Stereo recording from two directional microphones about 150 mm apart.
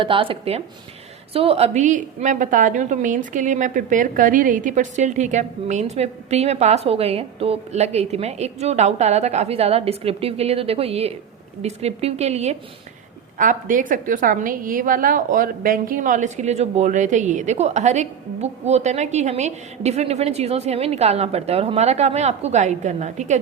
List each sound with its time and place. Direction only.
0.0 s a woman's voice: 35° right (ahead or behind)
13.4 s a woman's voice: 60° right (ahead or behind)